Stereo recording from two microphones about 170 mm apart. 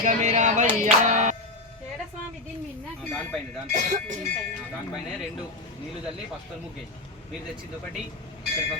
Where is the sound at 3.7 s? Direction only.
45° right (ahead or behind).